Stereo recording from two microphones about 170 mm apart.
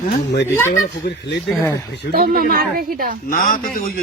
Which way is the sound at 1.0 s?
90° left.